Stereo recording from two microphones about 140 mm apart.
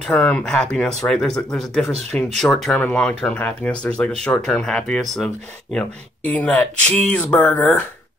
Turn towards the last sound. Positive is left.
turn(degrees=15)  # may be behind; listen again after turning